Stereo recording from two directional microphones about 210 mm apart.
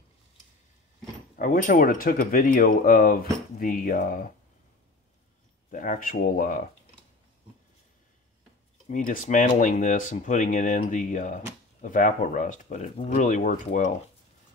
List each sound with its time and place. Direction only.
1.4 s speech: 40° left (ahead or behind)
5.7 s speech: 40° left (ahead or behind)
8.8 s speech: 40° left (ahead or behind)